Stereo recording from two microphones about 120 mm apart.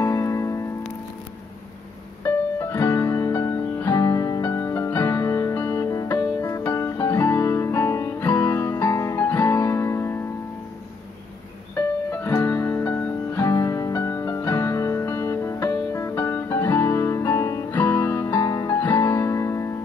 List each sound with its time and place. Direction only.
0.0 s music: 25° left (ahead or behind)
2.2 s music: 20° left (ahead or behind)
11.7 s music: 15° left (ahead or behind)
18.4 s music: 30° left (ahead or behind)
18.8 s music: 15° left (ahead or behind)